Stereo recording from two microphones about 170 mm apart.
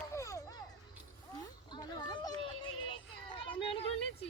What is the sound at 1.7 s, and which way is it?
Children playing, 25° left (ahead or behind).